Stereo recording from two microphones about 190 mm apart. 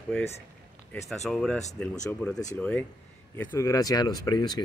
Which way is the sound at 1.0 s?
5° left (ahead or behind).